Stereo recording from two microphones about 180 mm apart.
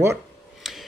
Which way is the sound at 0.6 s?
Centre (ahead or behind).